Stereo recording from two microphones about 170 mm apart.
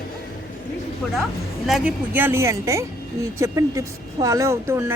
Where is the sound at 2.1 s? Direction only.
15° right (ahead or behind).